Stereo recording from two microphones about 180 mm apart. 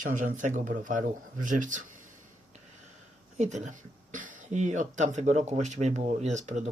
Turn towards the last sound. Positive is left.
turn(degrees=-40)  # may be behind; listen again after turning